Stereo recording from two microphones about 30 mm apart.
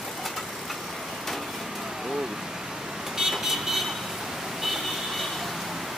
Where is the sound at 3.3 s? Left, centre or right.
Centre.